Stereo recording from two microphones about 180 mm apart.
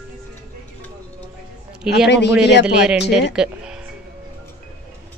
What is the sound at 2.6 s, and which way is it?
Speech, 5° right (ahead or behind).